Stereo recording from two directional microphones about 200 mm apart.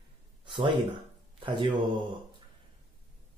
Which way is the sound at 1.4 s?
25° right (ahead or behind).